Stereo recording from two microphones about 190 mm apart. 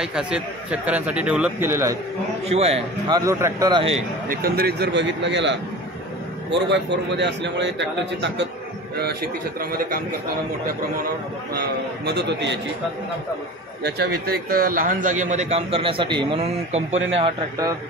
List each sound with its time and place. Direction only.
0.0 s a man's voice: 5° right (ahead or behind)
2.4 s a man's voice: 35° right (ahead or behind)
3.1 s a man's voice: 15° right (ahead or behind)
4.4 s a man's voice: 55° right (ahead or behind)
8.9 s a man's voice: 55° right (ahead or behind)
11.5 s a man's voice: 60° right (ahead or behind)
13.8 s a man's voice: 60° right (ahead or behind); by 17.0 s 35° right (ahead or behind)
17.2 s a man's voice: 20° right (ahead or behind)